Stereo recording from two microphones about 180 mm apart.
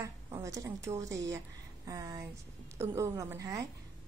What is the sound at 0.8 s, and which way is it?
A woman's voice, 15° right (ahead or behind).